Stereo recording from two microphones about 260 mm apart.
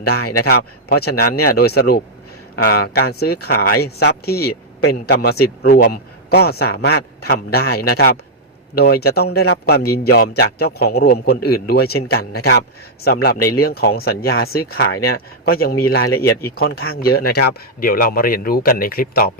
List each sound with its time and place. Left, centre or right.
0.2 s a man's voice: left
0.5 s a man's voice: left